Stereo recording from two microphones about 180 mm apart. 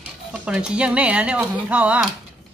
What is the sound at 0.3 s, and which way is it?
Speech, 5° right (ahead or behind).